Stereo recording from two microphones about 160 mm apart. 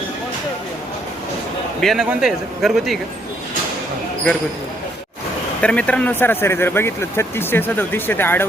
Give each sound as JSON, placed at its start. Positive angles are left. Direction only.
{"t": 1.8, "sound": "a man's voice", "side_deg": 0}
{"t": 5.6, "sound": "speech", "side_deg": 5}